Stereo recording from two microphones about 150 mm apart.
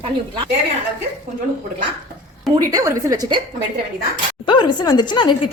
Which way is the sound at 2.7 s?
25° right (ahead or behind).